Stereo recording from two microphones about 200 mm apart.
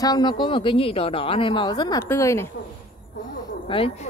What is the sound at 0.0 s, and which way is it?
A man's voice, 20° left (ahead or behind).